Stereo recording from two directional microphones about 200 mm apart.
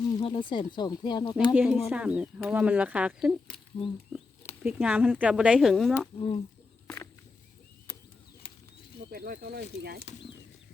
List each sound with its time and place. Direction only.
0.2 s speech: 25° left (ahead or behind)
1.5 s speech: centre (ahead or behind)
4.6 s speech: 5° right (ahead or behind)
6.1 s speech: 30° left (ahead or behind)
6.8 s a sound: 10° left (ahead or behind)
9.1 s speech: 50° right (ahead or behind)